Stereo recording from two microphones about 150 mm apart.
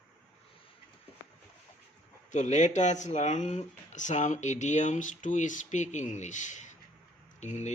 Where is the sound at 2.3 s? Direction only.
50° left (ahead or behind).